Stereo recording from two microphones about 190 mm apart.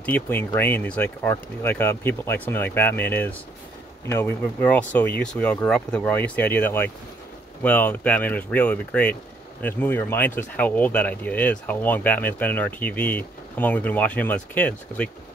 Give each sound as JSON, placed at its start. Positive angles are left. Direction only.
{"t": 0.0, "sound": "speech", "side_deg": 10}